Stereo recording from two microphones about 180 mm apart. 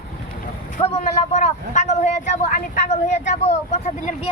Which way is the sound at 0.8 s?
40° left (ahead or behind).